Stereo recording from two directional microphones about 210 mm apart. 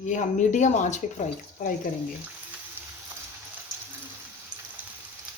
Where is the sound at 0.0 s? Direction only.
35° left (ahead or behind).